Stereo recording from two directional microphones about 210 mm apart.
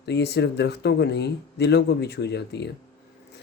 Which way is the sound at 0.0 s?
55° left (ahead or behind).